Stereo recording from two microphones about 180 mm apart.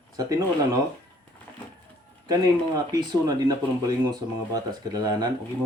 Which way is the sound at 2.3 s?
20° right (ahead or behind).